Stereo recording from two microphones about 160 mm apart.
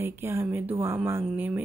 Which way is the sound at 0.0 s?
15° right (ahead or behind).